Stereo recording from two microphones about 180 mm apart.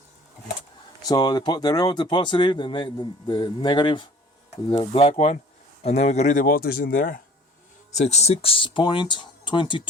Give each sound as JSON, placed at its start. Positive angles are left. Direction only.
{"t": 1.0, "sound": "speech", "side_deg": 20}
{"t": 7.9, "sound": "speech", "side_deg": 35}